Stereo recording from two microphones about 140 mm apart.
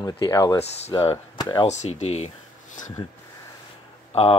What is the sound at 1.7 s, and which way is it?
Speech, 55° left (ahead or behind).